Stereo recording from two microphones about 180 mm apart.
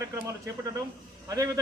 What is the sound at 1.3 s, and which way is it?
Speech, 20° right (ahead or behind).